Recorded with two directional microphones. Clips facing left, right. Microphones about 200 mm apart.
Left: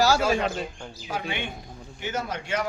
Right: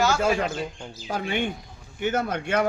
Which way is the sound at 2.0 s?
55° right (ahead or behind).